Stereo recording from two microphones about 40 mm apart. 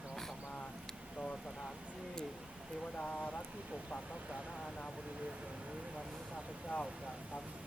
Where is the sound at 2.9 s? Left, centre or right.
Left.